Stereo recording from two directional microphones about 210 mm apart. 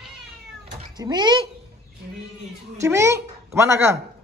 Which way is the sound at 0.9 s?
20° right (ahead or behind).